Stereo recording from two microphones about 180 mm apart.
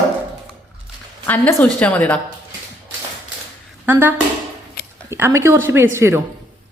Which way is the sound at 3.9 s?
10° right (ahead or behind).